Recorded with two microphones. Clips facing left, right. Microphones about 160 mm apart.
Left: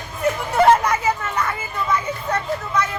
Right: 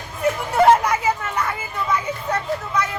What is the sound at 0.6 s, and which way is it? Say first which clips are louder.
Children playing: even; 10° right (ahead or behind).